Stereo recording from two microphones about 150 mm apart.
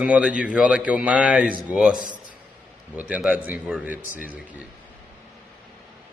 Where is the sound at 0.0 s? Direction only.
10° right (ahead or behind).